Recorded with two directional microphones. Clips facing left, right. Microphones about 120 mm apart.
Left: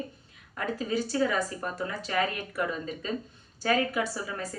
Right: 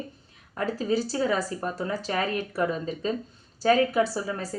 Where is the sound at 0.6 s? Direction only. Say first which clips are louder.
Right 4 dB; 35° right (ahead or behind).